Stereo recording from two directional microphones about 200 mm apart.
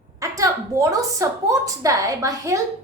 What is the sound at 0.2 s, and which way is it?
A woman's voice, 15° right (ahead or behind).